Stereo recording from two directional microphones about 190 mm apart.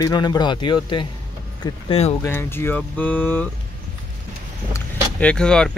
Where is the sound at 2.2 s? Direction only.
10° left (ahead or behind).